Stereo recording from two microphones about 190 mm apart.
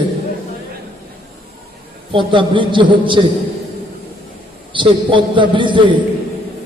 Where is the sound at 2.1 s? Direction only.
25° right (ahead or behind).